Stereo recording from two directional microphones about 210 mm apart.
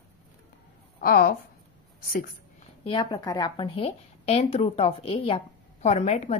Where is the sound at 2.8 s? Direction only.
20° left (ahead or behind).